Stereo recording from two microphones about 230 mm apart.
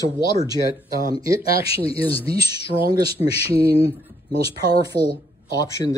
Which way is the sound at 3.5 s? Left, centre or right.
Right.